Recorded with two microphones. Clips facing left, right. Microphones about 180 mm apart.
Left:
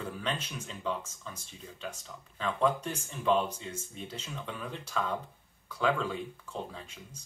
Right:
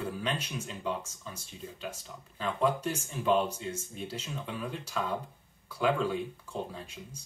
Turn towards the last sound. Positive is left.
turn(degrees=-10)  # may be behind; listen again after turning